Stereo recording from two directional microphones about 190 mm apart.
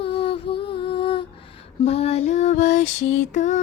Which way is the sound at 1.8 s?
35° left (ahead or behind).